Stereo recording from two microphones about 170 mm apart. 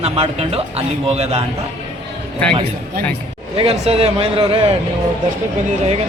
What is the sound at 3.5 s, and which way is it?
A man's voice, 35° right (ahead or behind).